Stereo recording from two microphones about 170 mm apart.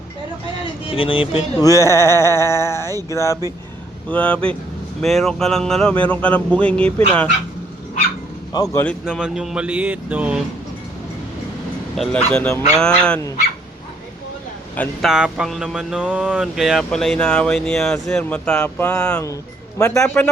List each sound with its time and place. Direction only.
0.9 s speech: 30° left (ahead or behind)
1.5 s speech: 20° left (ahead or behind)
4.1 s speech: 5° left (ahead or behind)
8.5 s speech: 20° left (ahead or behind)
9.0 s a sound: 5° right (ahead or behind)
11.9 s speech: 5° left (ahead or behind)
12.8 s a sound: 5° left (ahead or behind)
14.8 s a sound: centre (ahead or behind)
19.8 s speech: 5° left (ahead or behind)